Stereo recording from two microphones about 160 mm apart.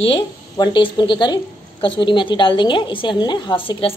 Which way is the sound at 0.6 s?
30° left (ahead or behind).